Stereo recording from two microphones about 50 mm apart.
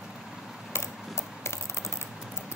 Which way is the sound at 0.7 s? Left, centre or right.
Left.